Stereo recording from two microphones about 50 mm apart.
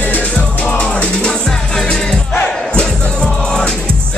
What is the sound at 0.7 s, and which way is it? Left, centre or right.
Music, left.